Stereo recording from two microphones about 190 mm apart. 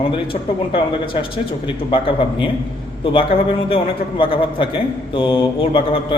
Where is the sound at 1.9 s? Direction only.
25° left (ahead or behind).